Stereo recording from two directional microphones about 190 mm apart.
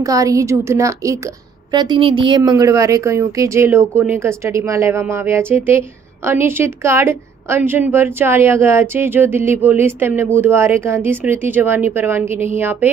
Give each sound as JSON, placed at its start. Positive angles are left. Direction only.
{"t": 0.0, "sound": "a woman's voice", "side_deg": -20}